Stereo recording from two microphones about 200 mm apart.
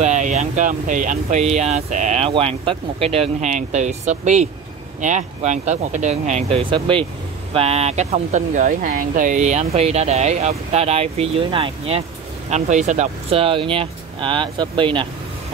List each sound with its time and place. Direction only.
0.0 s speech: 35° right (ahead or behind)